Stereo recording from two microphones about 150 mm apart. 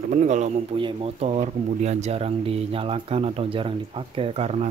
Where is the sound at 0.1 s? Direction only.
55° right (ahead or behind).